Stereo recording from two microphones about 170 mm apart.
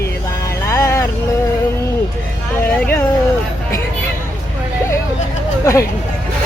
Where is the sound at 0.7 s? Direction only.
15° left (ahead or behind).